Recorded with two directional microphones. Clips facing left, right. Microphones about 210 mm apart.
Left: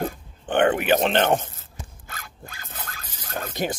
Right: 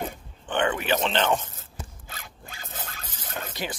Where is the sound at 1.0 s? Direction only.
55° left (ahead or behind).